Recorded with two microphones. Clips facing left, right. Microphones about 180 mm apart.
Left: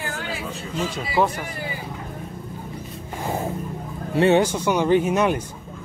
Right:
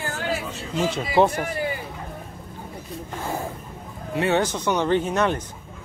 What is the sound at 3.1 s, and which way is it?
Music, 15° left (ahead or behind).